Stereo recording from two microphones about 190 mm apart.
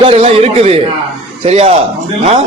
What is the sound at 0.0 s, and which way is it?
A man's voice, 30° right (ahead or behind).